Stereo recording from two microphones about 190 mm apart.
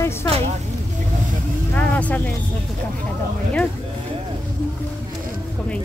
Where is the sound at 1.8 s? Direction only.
5° left (ahead or behind).